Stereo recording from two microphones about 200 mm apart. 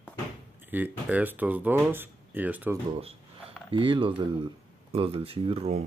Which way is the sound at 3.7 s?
25° right (ahead or behind).